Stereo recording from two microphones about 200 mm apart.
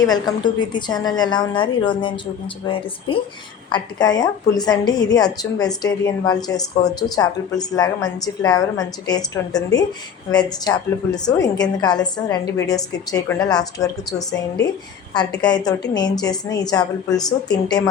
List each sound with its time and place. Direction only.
0.0 s a woman's voice: 20° left (ahead or behind)